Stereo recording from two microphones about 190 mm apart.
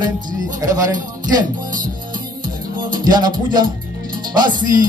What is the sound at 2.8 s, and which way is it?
Music, 20° right (ahead or behind).